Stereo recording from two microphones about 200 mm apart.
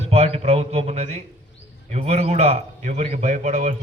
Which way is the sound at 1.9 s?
35° right (ahead or behind).